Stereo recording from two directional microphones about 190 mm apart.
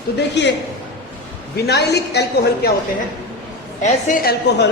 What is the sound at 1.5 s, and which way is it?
A woman's voice, 60° left (ahead or behind).